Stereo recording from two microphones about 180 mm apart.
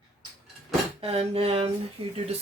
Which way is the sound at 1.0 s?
35° right (ahead or behind).